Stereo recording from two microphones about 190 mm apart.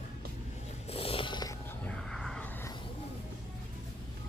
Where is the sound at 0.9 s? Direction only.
30° left (ahead or behind).